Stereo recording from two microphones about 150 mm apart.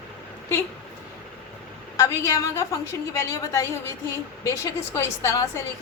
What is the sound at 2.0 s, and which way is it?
A woman's voice, 20° left (ahead or behind).